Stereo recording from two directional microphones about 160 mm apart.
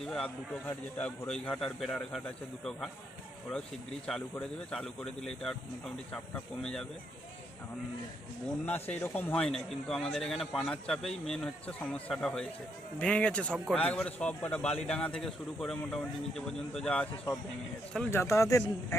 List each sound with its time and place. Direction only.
0.0 s a man's voice: 5° left (ahead or behind)
4.0 s a man's voice: 5° left (ahead or behind)
8.7 s a man's voice: 10° left (ahead or behind)